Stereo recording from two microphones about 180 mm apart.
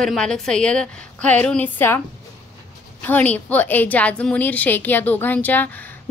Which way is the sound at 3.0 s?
10° left (ahead or behind).